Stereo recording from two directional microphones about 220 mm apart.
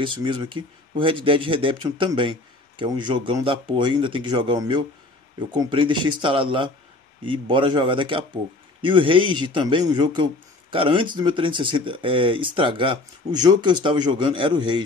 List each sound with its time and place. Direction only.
0.0 s a man's voice: 20° right (ahead or behind)